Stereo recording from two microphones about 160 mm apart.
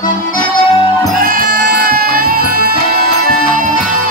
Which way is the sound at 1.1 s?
60° right (ahead or behind).